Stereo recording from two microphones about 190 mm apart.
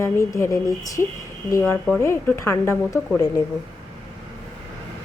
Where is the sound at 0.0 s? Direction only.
15° left (ahead or behind).